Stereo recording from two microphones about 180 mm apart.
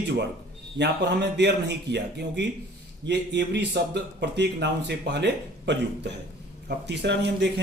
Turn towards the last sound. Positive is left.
turn(degrees=-70)  # may be behind; listen again after turning